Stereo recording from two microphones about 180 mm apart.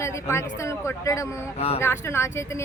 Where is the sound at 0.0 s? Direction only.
15° left (ahead or behind).